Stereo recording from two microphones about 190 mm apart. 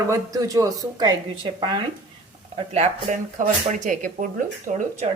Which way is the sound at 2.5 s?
35° right (ahead or behind).